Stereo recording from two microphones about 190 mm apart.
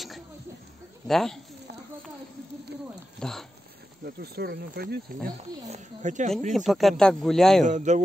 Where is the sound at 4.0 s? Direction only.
55° right (ahead or behind).